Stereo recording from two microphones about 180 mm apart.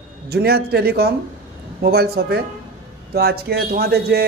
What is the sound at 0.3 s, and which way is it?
A man's voice, 60° right (ahead or behind).